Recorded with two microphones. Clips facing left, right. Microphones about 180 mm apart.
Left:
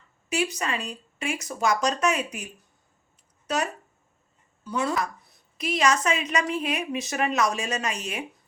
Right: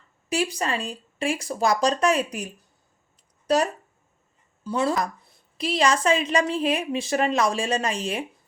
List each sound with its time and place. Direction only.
0.3 s a woman's voice: 30° right (ahead or behind)